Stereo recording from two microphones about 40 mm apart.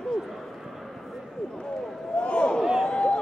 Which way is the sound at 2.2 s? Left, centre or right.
Left.